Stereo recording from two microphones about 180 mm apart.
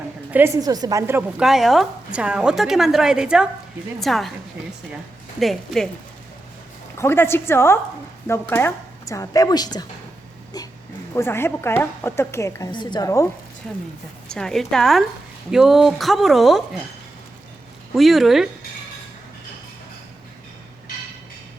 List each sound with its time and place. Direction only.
0.3 s a woman's voice: 10° right (ahead or behind)
1.5 s a woman's voice: centre (ahead or behind)
5.4 s a woman's voice: centre (ahead or behind)
7.0 s a woman's voice: 15° left (ahead or behind)
11.1 s a woman's voice: 15° left (ahead or behind)
13.6 s a woman's voice: 5° left (ahead or behind)
17.9 s a woman's voice: centre (ahead or behind)